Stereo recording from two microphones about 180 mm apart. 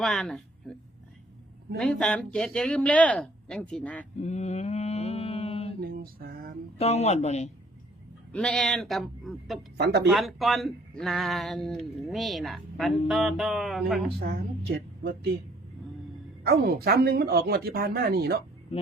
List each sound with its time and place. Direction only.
0.0 s speech: centre (ahead or behind)
1.8 s speech: 5° left (ahead or behind)
4.2 s mantra: 40° left (ahead or behind)
5.8 s a sound: 55° right (ahead or behind)
6.7 s speech: 35° left (ahead or behind)
8.3 s speech: 5° left (ahead or behind)
9.7 s speech: 65° right (ahead or behind)
10.1 s speech: centre (ahead or behind)
14.2 s speech: 65° right (ahead or behind)
16.4 s speech: 60° right (ahead or behind)